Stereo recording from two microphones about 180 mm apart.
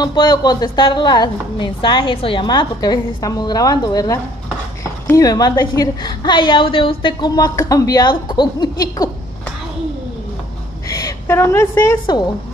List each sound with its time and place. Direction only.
0.0 s a woman's voice: 25° left (ahead or behind)
10.9 s a woman's voice: 20° left (ahead or behind)